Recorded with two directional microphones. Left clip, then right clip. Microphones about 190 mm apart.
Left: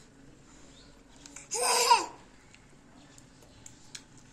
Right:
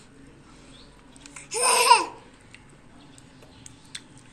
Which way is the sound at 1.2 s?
10° left (ahead or behind).